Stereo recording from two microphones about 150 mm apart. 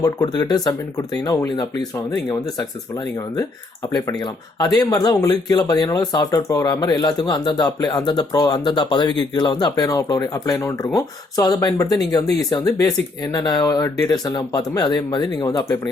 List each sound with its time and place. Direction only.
0.0 s speech: 25° left (ahead or behind)
3.9 s speech: 25° left (ahead or behind)